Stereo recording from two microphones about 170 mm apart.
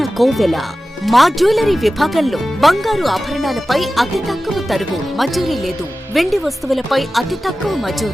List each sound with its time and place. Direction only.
0.0 s speech: centre (ahead or behind)